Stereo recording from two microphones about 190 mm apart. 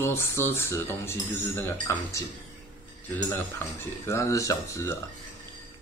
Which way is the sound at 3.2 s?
10° left (ahead or behind).